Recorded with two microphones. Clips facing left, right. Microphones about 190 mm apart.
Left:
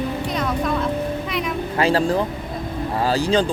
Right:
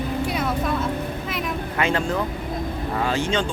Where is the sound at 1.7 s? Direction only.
35° left (ahead or behind).